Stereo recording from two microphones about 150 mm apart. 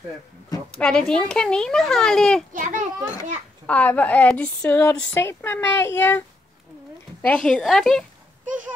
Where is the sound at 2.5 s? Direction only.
60° right (ahead or behind).